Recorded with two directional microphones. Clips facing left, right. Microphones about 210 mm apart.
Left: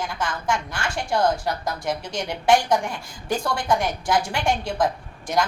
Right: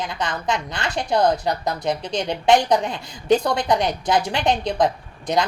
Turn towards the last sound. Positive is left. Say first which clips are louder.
# right 4 dB
turn(degrees=-20)  # may be behind; listen again after turning